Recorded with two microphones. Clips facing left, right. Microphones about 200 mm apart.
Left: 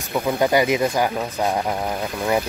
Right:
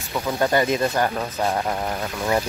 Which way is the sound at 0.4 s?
10° left (ahead or behind).